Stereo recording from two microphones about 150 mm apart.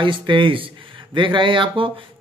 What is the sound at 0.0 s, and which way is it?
Speech, 35° right (ahead or behind).